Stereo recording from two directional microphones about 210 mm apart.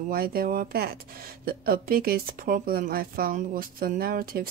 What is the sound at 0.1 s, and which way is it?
Speech, 45° right (ahead or behind).